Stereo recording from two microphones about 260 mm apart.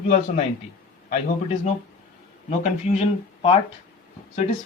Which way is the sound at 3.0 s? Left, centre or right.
Left.